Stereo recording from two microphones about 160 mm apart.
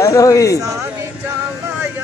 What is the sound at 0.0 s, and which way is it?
Speech, 20° left (ahead or behind).